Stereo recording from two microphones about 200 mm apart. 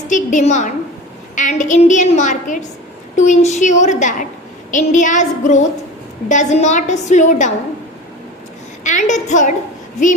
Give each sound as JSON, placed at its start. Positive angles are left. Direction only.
{"t": 0.1, "sound": "a woman's voice", "side_deg": 40}
{"t": 8.8, "sound": "a woman's voice", "side_deg": 40}